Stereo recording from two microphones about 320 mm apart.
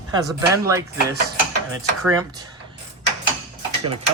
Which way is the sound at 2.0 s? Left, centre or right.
Centre.